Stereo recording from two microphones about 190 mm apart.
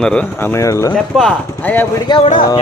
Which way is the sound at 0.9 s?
5° left (ahead or behind).